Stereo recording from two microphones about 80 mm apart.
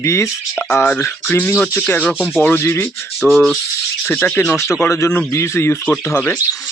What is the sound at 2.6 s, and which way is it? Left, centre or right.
Speech, left.